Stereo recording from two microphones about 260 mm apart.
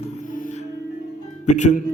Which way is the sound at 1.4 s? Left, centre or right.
Left.